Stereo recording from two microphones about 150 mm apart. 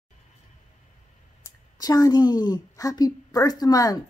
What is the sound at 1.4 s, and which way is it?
A woman's voice, 25° left (ahead or behind).